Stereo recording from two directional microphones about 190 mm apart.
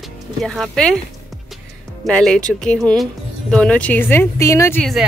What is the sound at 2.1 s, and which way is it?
Speech, 5° left (ahead or behind).